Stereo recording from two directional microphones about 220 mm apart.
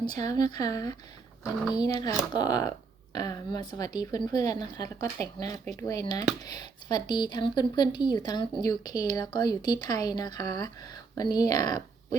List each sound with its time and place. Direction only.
0.1 s speech: 15° left (ahead or behind)